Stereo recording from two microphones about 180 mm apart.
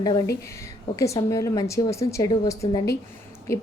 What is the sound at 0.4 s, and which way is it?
A woman's voice, 15° left (ahead or behind).